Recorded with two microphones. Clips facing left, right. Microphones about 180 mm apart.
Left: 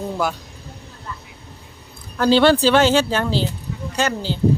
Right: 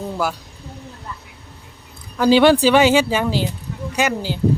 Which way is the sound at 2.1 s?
10° right (ahead or behind).